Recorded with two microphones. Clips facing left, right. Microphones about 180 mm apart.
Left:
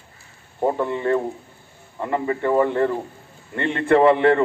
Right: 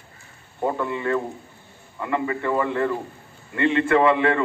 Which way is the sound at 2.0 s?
35° left (ahead or behind).